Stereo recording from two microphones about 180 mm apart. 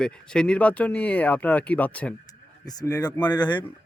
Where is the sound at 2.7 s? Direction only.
20° left (ahead or behind).